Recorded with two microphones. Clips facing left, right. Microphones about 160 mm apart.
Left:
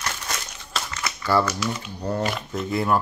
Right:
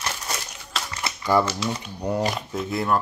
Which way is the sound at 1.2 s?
15° right (ahead or behind).